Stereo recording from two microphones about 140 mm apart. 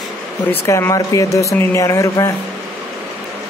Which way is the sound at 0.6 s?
20° left (ahead or behind).